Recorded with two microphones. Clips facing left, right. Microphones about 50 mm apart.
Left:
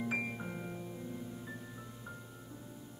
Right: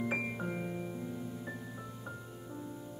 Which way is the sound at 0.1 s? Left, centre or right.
Centre.